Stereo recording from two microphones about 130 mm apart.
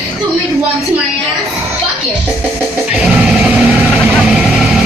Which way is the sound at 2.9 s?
5° right (ahead or behind).